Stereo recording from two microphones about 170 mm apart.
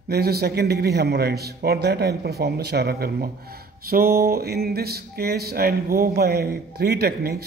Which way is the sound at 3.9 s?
60° right (ahead or behind).